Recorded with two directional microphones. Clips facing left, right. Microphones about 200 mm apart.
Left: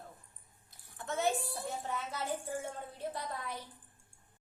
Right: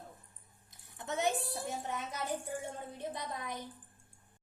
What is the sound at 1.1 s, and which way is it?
A child's voice, 20° right (ahead or behind).